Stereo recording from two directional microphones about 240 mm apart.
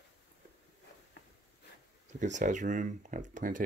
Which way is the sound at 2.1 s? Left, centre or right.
Right.